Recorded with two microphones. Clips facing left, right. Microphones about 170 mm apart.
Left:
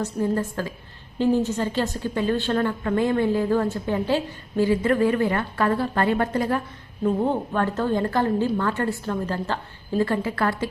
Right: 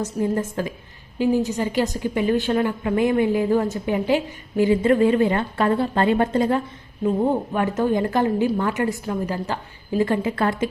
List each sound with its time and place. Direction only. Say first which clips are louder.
0.0 s a woman's voice: right 1 dB; 15° right (ahead or behind)
7.0 s a woman's voice: right 2 dB; 10° right (ahead or behind)